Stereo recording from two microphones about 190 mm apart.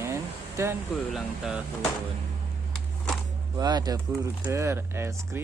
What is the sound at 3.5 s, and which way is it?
Speech, 20° right (ahead or behind).